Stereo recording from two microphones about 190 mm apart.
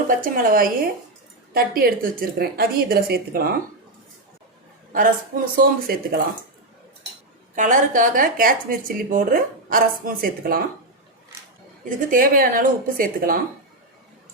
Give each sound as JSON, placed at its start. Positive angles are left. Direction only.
{"t": 0.1, "sound": "a woman's voice", "side_deg": -45}
{"t": 4.9, "sound": "a woman's voice", "side_deg": -45}
{"t": 7.5, "sound": "a woman's voice", "side_deg": -45}
{"t": 11.9, "sound": "a woman's voice", "side_deg": -45}